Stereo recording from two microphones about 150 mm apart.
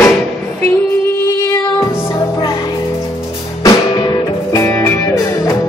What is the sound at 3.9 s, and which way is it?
Music, 25° left (ahead or behind).